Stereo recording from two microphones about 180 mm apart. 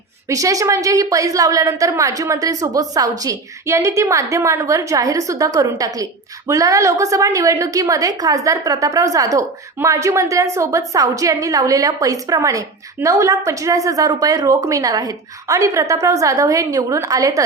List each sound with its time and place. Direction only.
0.3 s a woman's voice: 20° right (ahead or behind)